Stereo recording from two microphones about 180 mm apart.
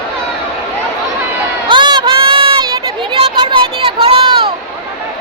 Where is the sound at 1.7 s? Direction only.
25° right (ahead or behind).